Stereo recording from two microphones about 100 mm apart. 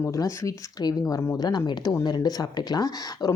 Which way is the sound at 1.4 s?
45° left (ahead or behind).